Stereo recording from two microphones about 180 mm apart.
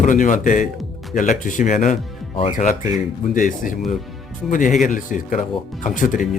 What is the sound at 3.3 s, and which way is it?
Speech, 45° left (ahead or behind).